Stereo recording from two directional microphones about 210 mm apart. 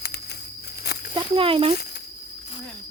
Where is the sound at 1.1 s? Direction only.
25° right (ahead or behind).